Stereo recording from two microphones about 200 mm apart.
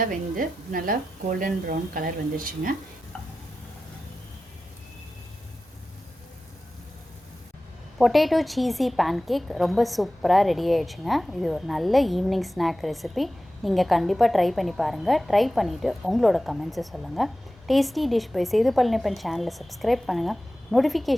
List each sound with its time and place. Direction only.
0.0 s speech: 45° right (ahead or behind)
7.9 s a woman's voice: centre (ahead or behind)